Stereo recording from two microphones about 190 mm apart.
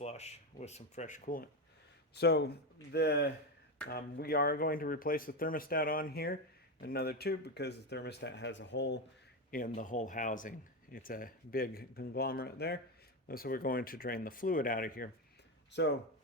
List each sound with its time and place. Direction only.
0.0 s speech: 35° left (ahead or behind)
2.1 s speech: 60° left (ahead or behind)
9.5 s speech: 45° left (ahead or behind)
15.7 s speech: 65° left (ahead or behind)